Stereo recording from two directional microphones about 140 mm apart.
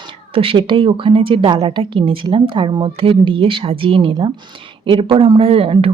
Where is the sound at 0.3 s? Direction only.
35° right (ahead or behind).